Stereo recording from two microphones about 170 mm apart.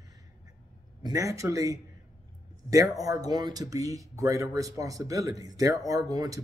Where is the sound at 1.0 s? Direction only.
20° right (ahead or behind).